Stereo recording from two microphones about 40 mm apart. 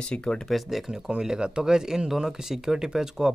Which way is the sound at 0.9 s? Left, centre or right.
Centre.